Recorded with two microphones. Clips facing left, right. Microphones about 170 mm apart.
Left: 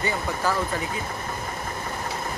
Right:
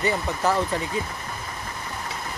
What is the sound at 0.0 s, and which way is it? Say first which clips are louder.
Speech: right 2 dB; 25° right (ahead or behind).